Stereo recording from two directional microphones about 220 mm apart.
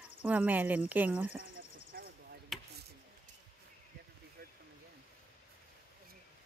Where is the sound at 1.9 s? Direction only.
50° right (ahead or behind).